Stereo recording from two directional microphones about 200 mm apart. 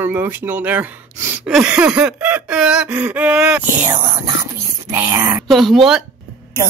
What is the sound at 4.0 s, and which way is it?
Whispering, 20° right (ahead or behind).